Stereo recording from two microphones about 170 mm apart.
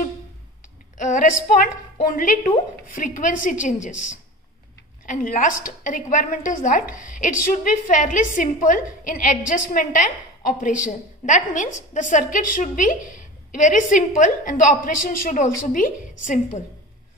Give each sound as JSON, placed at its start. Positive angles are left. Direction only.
{"t": 0.9, "sound": "a woman's voice", "side_deg": 50}